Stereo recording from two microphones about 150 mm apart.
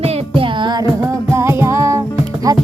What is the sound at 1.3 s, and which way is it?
Music, 15° right (ahead or behind).